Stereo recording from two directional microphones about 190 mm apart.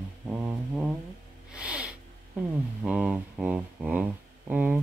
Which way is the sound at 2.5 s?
5° right (ahead or behind).